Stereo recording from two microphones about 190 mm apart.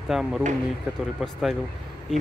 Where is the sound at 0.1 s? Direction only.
Centre (ahead or behind).